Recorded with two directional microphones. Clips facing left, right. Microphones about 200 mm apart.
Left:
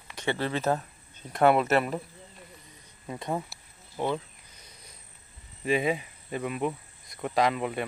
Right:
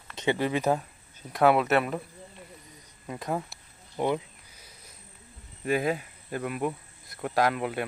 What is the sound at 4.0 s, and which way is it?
Cricket, 10° right (ahead or behind).